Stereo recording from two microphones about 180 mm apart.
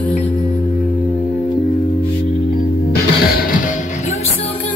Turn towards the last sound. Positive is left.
turn(degrees=55)  # may be behind; listen again after turning